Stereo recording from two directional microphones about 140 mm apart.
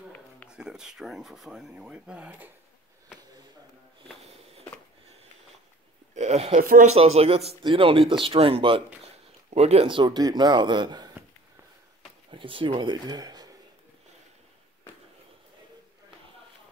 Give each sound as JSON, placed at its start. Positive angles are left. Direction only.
{"t": 0.5, "sound": "speech", "side_deg": -5}
{"t": 6.1, "sound": "a sound", "side_deg": -50}
{"t": 6.6, "sound": "speech", "side_deg": -90}
{"t": 6.9, "sound": "speech", "side_deg": -45}
{"t": 12.3, "sound": "speech", "side_deg": -35}